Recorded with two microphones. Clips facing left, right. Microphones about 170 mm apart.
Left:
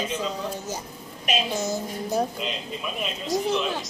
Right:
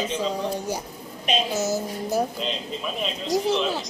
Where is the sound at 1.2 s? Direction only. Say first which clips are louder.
Right 2 dB; centre (ahead or behind).